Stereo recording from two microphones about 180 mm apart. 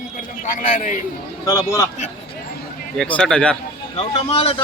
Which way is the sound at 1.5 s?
15° left (ahead or behind).